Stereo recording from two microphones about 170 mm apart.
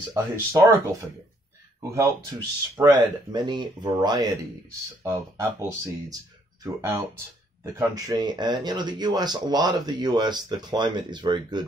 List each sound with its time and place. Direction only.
0.1 s speech: 15° right (ahead or behind)
1.8 s speech: 20° right (ahead or behind)
7.6 s speech: 20° right (ahead or behind)